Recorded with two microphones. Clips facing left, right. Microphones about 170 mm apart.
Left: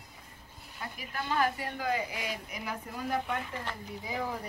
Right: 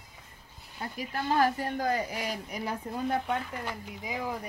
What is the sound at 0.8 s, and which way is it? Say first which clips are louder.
A woman's voice: right 5 dB; 40° right (ahead or behind).